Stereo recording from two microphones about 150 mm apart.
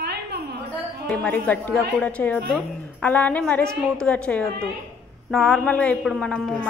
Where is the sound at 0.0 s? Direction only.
90° right.